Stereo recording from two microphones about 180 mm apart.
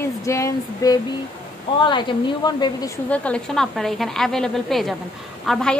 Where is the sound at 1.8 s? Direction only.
25° left (ahead or behind).